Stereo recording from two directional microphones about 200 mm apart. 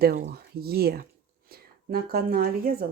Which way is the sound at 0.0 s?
50° right (ahead or behind).